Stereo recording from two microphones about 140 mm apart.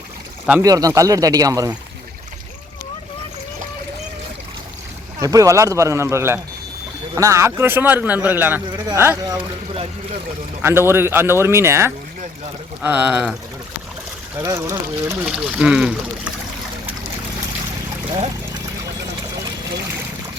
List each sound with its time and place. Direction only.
0.6 s a man's voice: 25° right (ahead or behind)
5.2 s a man's voice: 25° right (ahead or behind)
9.3 s speech: 40° right (ahead or behind)
10.6 s a man's voice: 15° right (ahead or behind)
14.3 s a man's voice: 20° right (ahead or behind)
15.3 s a man's voice: 5° right (ahead or behind)